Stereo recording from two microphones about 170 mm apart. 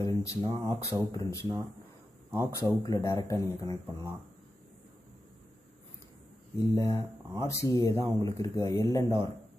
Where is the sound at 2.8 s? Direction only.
20° left (ahead or behind).